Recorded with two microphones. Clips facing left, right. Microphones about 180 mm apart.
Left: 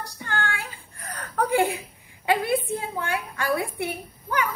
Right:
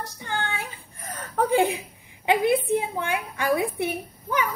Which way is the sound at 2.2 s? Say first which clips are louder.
Right 2 dB; 20° right (ahead or behind).